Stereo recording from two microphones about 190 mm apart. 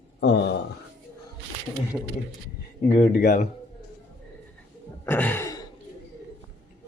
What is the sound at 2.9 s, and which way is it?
Speech, 40° left (ahead or behind).